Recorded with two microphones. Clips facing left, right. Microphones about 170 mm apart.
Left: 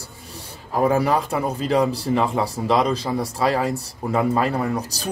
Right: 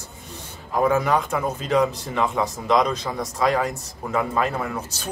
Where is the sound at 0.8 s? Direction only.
35° left (ahead or behind).